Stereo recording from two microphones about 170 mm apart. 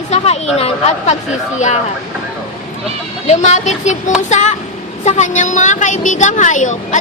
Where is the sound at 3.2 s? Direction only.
40° left (ahead or behind).